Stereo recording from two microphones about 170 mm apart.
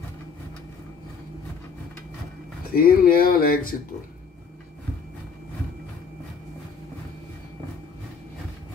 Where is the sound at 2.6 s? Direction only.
60° left (ahead or behind).